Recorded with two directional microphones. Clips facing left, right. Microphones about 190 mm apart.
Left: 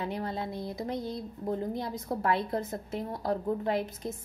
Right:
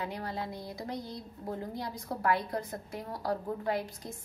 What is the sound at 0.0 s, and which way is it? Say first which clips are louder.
A woman's voice: left 3 dB; 25° left (ahead or behind).